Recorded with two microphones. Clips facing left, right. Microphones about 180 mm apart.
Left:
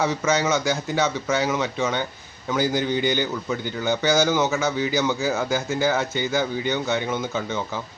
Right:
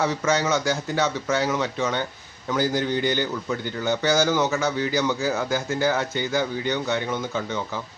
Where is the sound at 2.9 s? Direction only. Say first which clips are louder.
Left 1 dB; 20° left (ahead or behind).